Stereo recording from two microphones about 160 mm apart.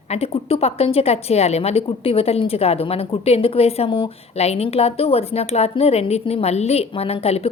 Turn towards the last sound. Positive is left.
turn(degrees=40)  # may be behind; listen again after turning